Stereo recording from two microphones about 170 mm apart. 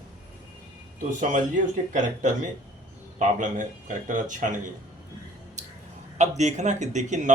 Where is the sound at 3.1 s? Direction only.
50° right (ahead or behind).